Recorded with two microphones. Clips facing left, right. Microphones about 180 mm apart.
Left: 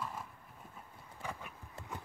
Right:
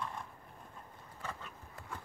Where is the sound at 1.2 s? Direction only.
15° left (ahead or behind).